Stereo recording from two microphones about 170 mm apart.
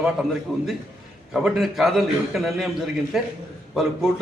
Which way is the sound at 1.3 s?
Centre (ahead or behind).